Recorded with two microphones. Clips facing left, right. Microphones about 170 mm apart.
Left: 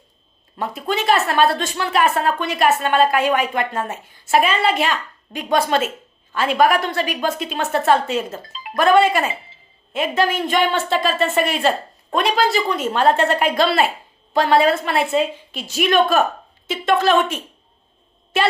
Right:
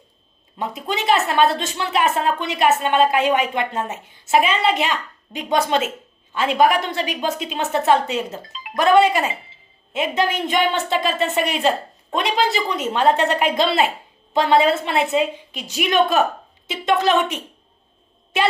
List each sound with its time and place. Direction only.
0.6 s a woman's voice: 20° right (ahead or behind)